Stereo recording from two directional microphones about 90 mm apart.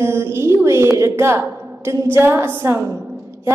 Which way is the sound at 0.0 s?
25° right (ahead or behind).